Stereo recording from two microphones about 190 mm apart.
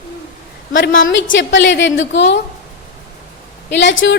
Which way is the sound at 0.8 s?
80° left.